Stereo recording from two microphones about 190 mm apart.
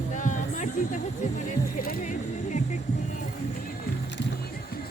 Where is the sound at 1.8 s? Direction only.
45° left (ahead or behind).